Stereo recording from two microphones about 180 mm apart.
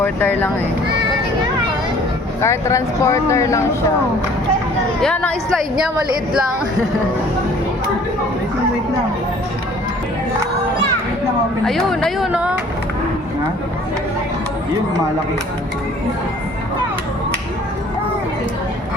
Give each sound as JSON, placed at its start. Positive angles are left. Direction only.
{"t": 0.0, "sound": "speech", "side_deg": 10}
{"t": 2.4, "sound": "speech", "side_deg": 15}
{"t": 4.9, "sound": "speech", "side_deg": 5}
{"t": 11.6, "sound": "speech", "side_deg": 0}